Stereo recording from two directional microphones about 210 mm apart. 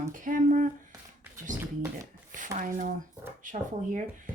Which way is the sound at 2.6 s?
40° right (ahead or behind).